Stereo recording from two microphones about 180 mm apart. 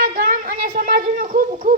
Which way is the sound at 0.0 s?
50° right (ahead or behind).